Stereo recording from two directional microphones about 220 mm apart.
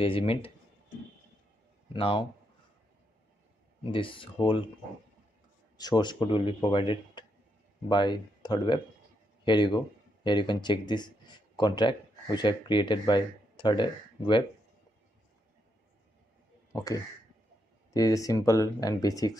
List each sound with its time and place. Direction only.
0.0 s speech: 25° left (ahead or behind)
2.0 s speech: 25° left (ahead or behind)
3.9 s speech: 25° left (ahead or behind)
5.8 s speech: 20° left (ahead or behind)
16.7 s speech: 15° left (ahead or behind)